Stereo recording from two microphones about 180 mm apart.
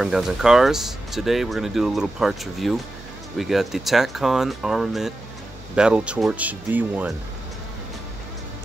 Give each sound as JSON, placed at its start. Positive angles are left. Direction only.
{"t": 0.0, "sound": "speech", "side_deg": 0}